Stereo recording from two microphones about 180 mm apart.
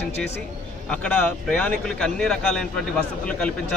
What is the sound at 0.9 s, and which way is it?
Speech, 5° left (ahead or behind).